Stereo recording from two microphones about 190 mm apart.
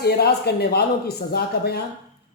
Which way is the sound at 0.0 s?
55° left (ahead or behind).